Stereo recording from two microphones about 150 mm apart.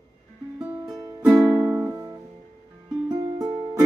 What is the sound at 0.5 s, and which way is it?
Music, 10° right (ahead or behind).